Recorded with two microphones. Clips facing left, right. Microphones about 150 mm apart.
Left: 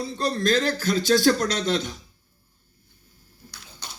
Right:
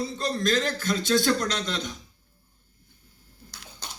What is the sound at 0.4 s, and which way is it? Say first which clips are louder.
Speech: left 3 dB; 35° left (ahead or behind).